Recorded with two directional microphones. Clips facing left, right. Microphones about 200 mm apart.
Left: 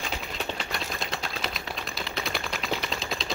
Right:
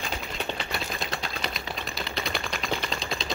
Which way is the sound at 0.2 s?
Centre (ahead or behind).